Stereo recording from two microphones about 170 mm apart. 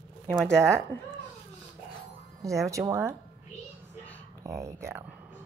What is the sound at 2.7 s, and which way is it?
Speech, 20° right (ahead or behind).